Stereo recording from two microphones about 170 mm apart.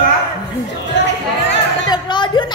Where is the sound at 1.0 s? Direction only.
90° left.